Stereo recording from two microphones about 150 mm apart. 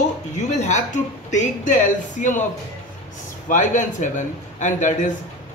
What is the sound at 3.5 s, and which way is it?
A man's voice, 55° left (ahead or behind).